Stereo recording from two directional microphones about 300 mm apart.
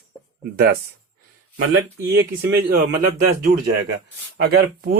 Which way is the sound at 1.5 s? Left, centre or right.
Right.